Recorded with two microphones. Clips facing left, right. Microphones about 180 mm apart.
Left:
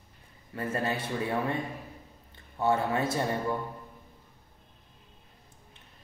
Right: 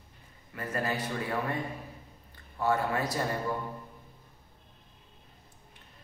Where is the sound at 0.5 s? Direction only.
30° left (ahead or behind).